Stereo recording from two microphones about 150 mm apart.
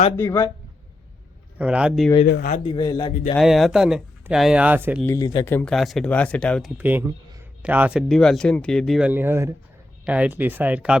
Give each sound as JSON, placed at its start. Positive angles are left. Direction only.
{"t": 0.2, "sound": "speech", "side_deg": 15}
{"t": 1.5, "sound": "speech", "side_deg": -5}
{"t": 2.2, "sound": "speech", "side_deg": 65}
{"t": 2.6, "sound": "a man's voice", "side_deg": 30}
{"t": 3.3, "sound": "speech", "side_deg": 0}
{"t": 5.0, "sound": "a man's voice", "side_deg": 25}
{"t": 5.5, "sound": "speech", "side_deg": 15}
{"t": 5.7, "sound": "speech", "side_deg": 0}
{"t": 6.7, "sound": "speech", "side_deg": -10}
{"t": 8.0, "sound": "speech", "side_deg": 5}
{"t": 9.0, "sound": "speech", "side_deg": -10}